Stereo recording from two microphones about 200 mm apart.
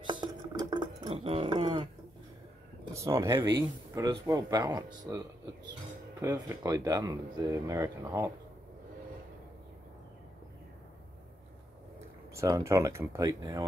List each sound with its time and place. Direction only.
0.0 s a sound: 20° right (ahead or behind)
2.9 s speech: 15° right (ahead or behind)
6.3 s speech: 15° right (ahead or behind)
12.4 s speech: 15° right (ahead or behind)